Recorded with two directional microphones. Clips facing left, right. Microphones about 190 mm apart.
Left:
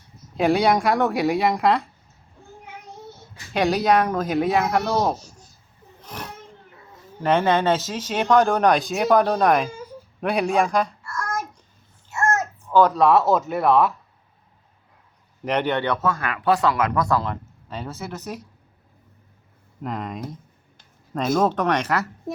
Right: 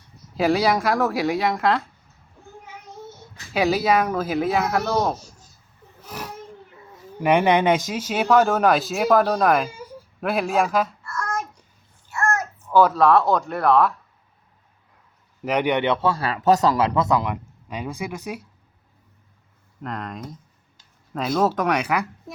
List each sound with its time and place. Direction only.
0.3 s speech: centre (ahead or behind)
3.5 s speech: 5° right (ahead or behind)
6.0 s a sound: 10° right (ahead or behind)
7.2 s speech: 15° right (ahead or behind)
11.1 s child singing: 10° left (ahead or behind)
12.1 s child singing: 25° left (ahead or behind)
12.7 s speech: 5° right (ahead or behind)
15.4 s speech: 10° right (ahead or behind)
19.8 s speech: centre (ahead or behind)